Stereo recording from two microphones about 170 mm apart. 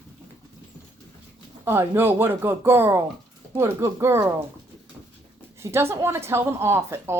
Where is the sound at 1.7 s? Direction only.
15° right (ahead or behind).